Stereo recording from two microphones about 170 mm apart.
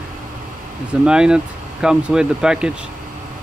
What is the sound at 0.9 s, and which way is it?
Speech, 5° right (ahead or behind).